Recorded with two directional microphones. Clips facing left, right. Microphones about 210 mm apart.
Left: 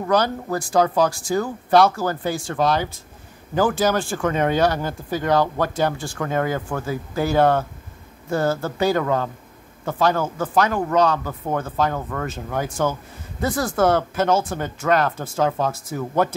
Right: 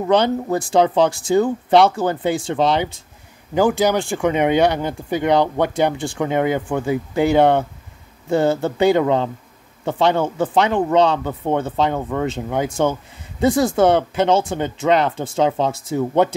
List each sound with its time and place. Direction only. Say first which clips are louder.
0.0 s speech: right 4 dB; 25° right (ahead or behind)